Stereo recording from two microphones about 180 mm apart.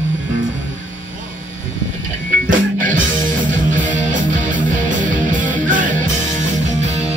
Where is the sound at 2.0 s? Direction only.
50° right (ahead or behind).